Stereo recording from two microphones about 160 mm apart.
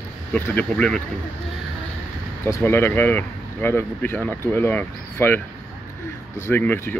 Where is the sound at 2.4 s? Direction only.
15° left (ahead or behind).